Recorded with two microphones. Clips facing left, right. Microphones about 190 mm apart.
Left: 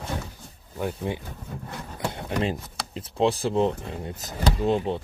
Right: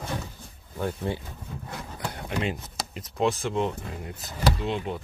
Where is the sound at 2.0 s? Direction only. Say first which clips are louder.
Left 3 dB; 25° left (ahead or behind).